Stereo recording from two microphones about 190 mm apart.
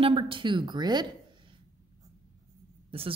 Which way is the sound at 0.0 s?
25° right (ahead or behind).